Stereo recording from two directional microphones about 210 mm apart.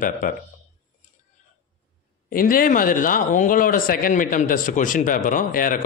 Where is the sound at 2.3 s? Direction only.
40° left (ahead or behind).